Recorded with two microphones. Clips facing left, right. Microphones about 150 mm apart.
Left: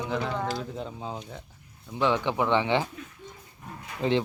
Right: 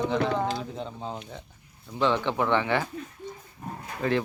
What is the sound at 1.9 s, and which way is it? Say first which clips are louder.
Speech: even; 15° left (ahead or behind).